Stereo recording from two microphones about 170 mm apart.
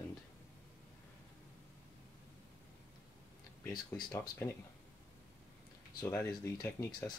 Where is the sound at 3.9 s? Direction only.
15° left (ahead or behind).